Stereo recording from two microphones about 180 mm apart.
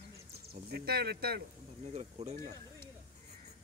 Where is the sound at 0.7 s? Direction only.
60° right (ahead or behind).